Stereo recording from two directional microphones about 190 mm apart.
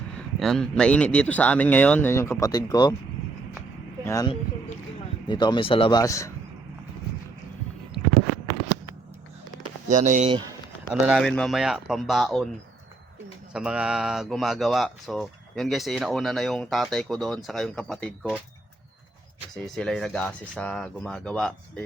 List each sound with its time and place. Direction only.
0.3 s speech: centre (ahead or behind); by 2.9 s 20° left (ahead or behind)
4.0 s speech: 15° left (ahead or behind)
5.3 s speech: 25° left (ahead or behind)
9.9 s speech: 40° right (ahead or behind)
11.0 s speech: centre (ahead or behind)
13.5 s speech: 5° right (ahead or behind)
19.5 s speech: 5° left (ahead or behind)